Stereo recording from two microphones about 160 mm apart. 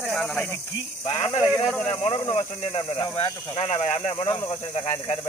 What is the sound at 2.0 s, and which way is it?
Speech, 40° left (ahead or behind).